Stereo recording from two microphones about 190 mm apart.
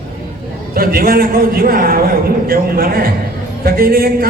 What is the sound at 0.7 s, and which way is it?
A man's voice, 50° right (ahead or behind).